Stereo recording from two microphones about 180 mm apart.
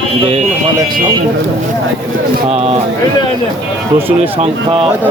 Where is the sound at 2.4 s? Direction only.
35° right (ahead or behind).